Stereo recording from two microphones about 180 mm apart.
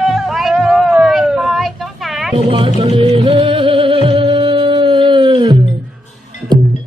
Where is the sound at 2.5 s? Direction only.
35° right (ahead or behind).